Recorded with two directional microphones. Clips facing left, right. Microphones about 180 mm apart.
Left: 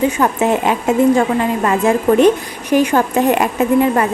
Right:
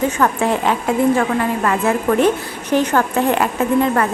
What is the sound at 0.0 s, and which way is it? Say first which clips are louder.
A woman's voice: left 2 dB; 20° left (ahead or behind).